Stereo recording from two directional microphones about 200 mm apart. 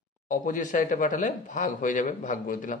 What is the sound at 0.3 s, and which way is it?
Speech, 40° left (ahead or behind).